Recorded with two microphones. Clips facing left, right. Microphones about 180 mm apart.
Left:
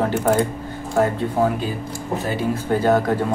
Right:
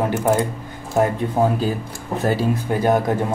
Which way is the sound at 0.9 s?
15° right (ahead or behind).